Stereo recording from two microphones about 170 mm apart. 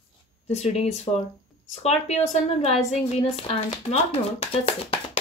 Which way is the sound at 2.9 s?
40° left (ahead or behind).